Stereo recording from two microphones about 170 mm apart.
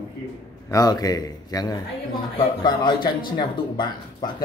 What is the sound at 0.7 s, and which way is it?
Speech, 20° left (ahead or behind).